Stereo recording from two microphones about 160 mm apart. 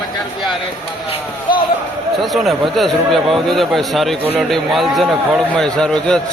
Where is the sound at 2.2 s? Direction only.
Centre (ahead or behind).